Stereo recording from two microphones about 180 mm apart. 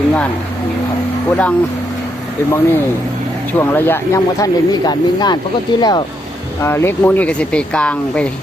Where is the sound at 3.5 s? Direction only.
10° left (ahead or behind).